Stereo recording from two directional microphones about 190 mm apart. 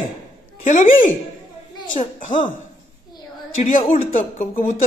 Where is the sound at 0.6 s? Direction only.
45° left (ahead or behind).